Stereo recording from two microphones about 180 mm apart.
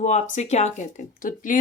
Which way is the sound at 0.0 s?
40° left (ahead or behind).